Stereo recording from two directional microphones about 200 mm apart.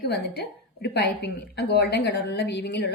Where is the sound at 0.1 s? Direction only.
55° left (ahead or behind).